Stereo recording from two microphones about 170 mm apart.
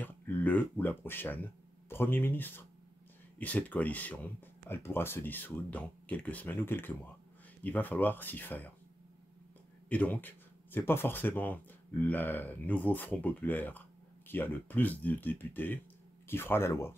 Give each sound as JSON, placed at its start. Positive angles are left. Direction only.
{"t": 0.0, "sound": "speech", "side_deg": 10}
{"t": 9.8, "sound": "speech", "side_deg": 10}